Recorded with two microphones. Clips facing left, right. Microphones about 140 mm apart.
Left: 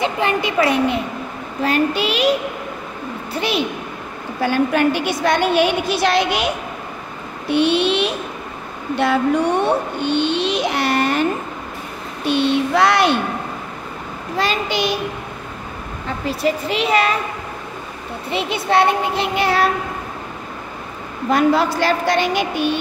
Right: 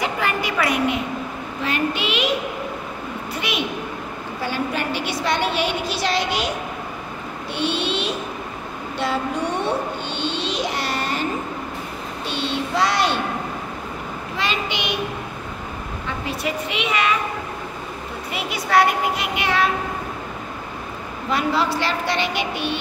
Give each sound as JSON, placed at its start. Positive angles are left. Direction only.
{"t": 0.0, "sound": "speech", "side_deg": 25}
{"t": 1.6, "sound": "a child's voice", "side_deg": 40}
{"t": 3.3, "sound": "a child's voice", "side_deg": 30}
{"t": 4.4, "sound": "a woman's voice", "side_deg": 55}
{"t": 7.5, "sound": "a woman's voice", "side_deg": 60}
{"t": 10.0, "sound": "a sound", "side_deg": 60}
{"t": 12.3, "sound": "a woman's voice", "side_deg": 55}
{"t": 14.3, "sound": "a child's voice", "side_deg": 40}
{"t": 16.3, "sound": "a child's voice", "side_deg": 35}
{"t": 18.3, "sound": "child singing", "side_deg": 25}
{"t": 21.3, "sound": "a woman's voice", "side_deg": 45}